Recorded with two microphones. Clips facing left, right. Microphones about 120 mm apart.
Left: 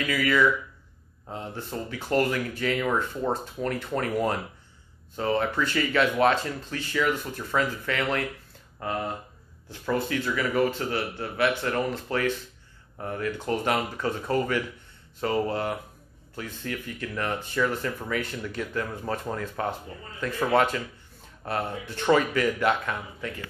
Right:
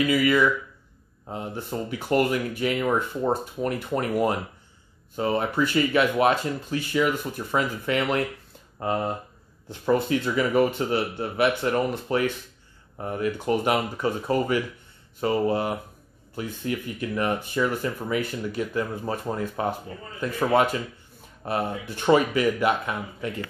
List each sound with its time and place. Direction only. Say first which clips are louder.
0.1 s speech: right 2 dB; 10° right (ahead or behind)